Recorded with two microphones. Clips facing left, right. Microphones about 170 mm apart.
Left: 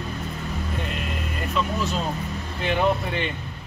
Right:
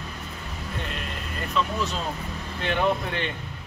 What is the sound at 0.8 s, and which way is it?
Speech, 5° left (ahead or behind).